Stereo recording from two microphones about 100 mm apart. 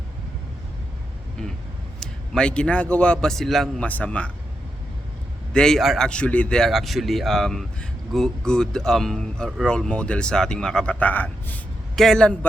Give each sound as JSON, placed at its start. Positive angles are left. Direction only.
{"t": 2.0, "sound": "a man's voice", "side_deg": 5}
{"t": 3.8, "sound": "a man's voice", "side_deg": 15}
{"t": 5.5, "sound": "a man's voice", "side_deg": 5}
{"t": 11.0, "sound": "a man's voice", "side_deg": 15}
{"t": 11.9, "sound": "a man's voice", "side_deg": 5}